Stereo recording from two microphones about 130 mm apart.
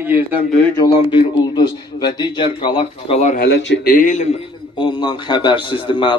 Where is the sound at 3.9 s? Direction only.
80° left.